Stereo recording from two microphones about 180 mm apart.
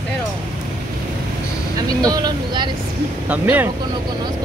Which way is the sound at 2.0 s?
20° right (ahead or behind).